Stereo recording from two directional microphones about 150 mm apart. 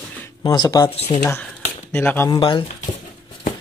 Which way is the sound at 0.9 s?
40° left (ahead or behind).